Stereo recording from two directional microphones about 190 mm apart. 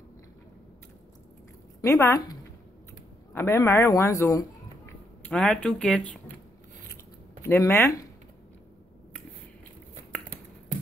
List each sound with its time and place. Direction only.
1.8 s speech: 15° left (ahead or behind)
3.3 s speech: 15° left (ahead or behind)
5.3 s speech: 5° left (ahead or behind)
7.4 s speech: 15° left (ahead or behind)